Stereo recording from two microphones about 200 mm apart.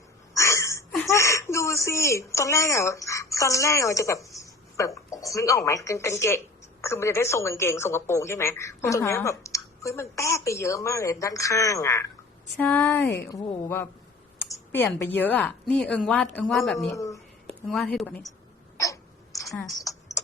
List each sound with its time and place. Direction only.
0.3 s a sound: 15° left (ahead or behind)
1.0 s a woman's voice: 15° left (ahead or behind)
16.9 s speech: 15° left (ahead or behind)
17.7 s speech: centre (ahead or behind)
18.8 s hiccup: 15° left (ahead or behind)